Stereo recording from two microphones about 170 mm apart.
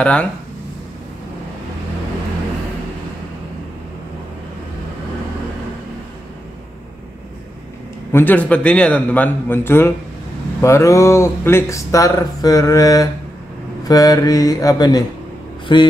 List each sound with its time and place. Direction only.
0.0 s a man's voice: 5° left (ahead or behind)
8.1 s a man's voice: 10° left (ahead or behind); by 15.8 s 30° left (ahead or behind)